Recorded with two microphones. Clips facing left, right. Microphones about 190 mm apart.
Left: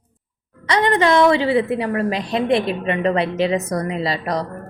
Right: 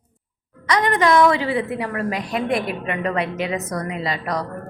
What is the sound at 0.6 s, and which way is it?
A woman's voice, 30° left (ahead or behind).